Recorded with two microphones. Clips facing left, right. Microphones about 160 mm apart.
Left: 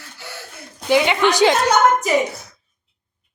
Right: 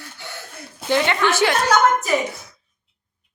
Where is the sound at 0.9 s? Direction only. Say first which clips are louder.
Left 3 dB; 15° left (ahead or behind).